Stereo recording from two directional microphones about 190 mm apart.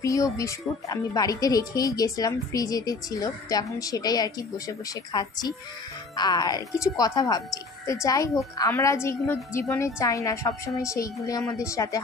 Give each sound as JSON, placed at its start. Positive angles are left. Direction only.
{"t": 0.0, "sound": "a woman's voice", "side_deg": 15}